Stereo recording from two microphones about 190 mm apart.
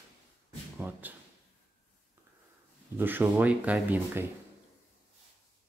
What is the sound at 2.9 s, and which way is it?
Speech, 10° right (ahead or behind).